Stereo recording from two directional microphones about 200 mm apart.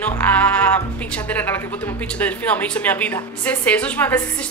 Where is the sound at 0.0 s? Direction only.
5° left (ahead or behind).